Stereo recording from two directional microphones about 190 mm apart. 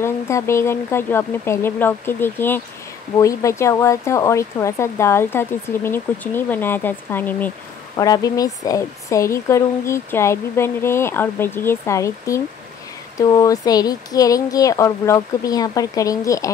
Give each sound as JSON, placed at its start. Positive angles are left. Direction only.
{"t": 0.0, "sound": "speech", "side_deg": 15}
{"t": 7.9, "sound": "speech", "side_deg": 20}